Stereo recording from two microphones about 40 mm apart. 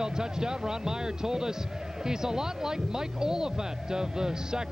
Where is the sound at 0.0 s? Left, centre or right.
Centre.